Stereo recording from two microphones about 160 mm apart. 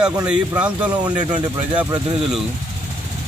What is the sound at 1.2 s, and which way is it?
Speech, 25° right (ahead or behind).